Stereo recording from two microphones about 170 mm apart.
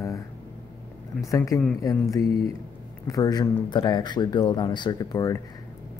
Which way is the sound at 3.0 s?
20° left (ahead or behind).